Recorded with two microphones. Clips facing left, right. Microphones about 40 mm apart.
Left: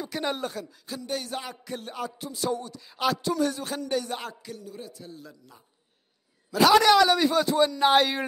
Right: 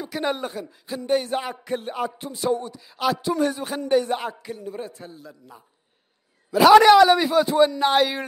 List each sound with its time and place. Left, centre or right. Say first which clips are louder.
0.0 s speech: right 4 dB; centre
0.7 s music: right 9 dB; right
2.8 s speech: right 3 dB; centre
3.3 s music: right 3 dB; right
5.1 s speech: right 2 dB; centre
6.5 s speech: right 6 dB; centre
7.8 s speech: right 1 dB; centre